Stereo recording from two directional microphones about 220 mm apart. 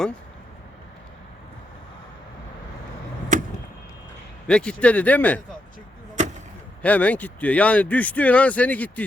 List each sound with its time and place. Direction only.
3.3 s vehicle: 35° right (ahead or behind)
4.4 s a man's voice: 5° left (ahead or behind)
6.8 s a man's voice: 5° left (ahead or behind)